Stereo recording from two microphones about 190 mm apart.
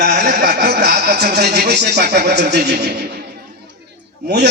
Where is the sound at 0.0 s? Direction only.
50° right (ahead or behind).